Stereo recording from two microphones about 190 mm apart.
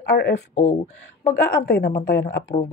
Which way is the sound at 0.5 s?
40° left (ahead or behind).